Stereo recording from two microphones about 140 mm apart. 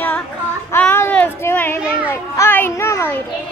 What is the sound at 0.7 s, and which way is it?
Children playing, 15° left (ahead or behind).